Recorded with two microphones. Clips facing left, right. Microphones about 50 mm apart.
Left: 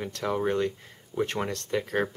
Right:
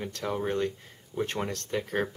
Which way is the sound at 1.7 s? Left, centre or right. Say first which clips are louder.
Left 3 dB; left.